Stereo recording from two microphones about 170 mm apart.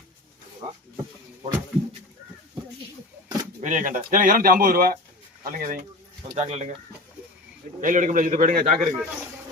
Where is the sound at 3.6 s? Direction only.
50° right (ahead or behind).